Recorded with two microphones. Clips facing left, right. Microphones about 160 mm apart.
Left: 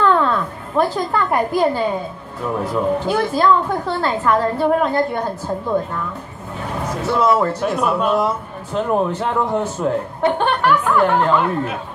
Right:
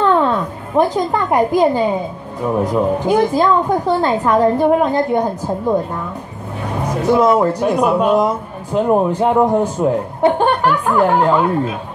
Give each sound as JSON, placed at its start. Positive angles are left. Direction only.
{"t": 0.0, "sound": "a woman's voice", "side_deg": -20}